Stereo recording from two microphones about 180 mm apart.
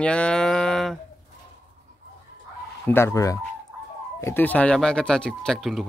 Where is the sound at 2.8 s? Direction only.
15° left (ahead or behind).